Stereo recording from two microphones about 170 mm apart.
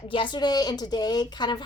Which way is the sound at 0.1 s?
30° left (ahead or behind).